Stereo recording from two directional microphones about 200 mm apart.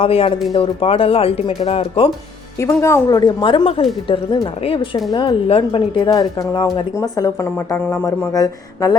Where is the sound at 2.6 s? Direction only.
15° left (ahead or behind).